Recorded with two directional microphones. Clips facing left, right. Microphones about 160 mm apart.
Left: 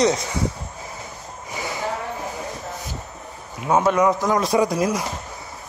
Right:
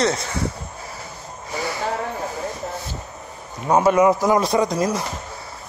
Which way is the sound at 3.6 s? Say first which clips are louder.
Right 2 dB; centre (ahead or behind).